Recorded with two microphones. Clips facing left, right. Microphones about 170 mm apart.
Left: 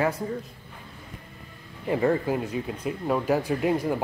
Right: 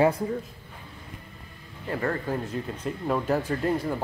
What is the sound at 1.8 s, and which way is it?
Speech, 15° left (ahead or behind).